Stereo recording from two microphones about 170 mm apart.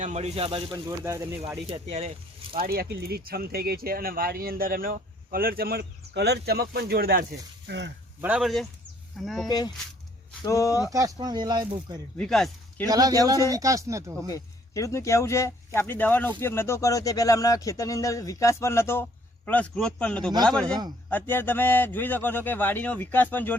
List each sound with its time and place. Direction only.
0.0 s speech: 40° right (ahead or behind)
0.9 s speech: 20° right (ahead or behind)
1.7 s speech: 40° right (ahead or behind)
2.6 s speech: 60° right (ahead or behind)
7.7 s speech: 90° right
8.2 s speech: 5° right (ahead or behind)
9.5 s speech: 25° left (ahead or behind)
10.9 s speech: 20° right (ahead or behind)
12.1 s speech: 5° left (ahead or behind)
12.8 s speech: 20° right (ahead or behind)
14.3 s a man's voice: 20° left (ahead or behind)
20.7 s speech: 25° right (ahead or behind)
21.1 s a man's voice: 10° left (ahead or behind)